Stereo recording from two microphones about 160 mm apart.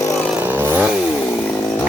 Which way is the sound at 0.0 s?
20° left (ahead or behind).